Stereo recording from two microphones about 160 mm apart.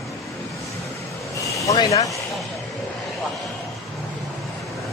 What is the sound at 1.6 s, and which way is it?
Speech, 25° left (ahead or behind).